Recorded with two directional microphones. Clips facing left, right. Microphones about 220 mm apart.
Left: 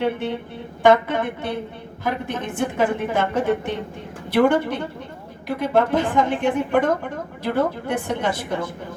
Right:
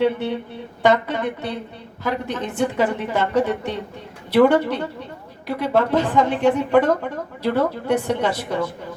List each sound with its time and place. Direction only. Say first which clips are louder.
0.0 s a woman's voice: right 3 dB; 50° left (ahead or behind)